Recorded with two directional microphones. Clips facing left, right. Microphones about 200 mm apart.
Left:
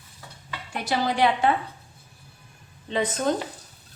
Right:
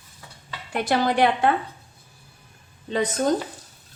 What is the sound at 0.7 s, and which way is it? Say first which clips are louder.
Speech: right 4 dB; 55° right (ahead or behind).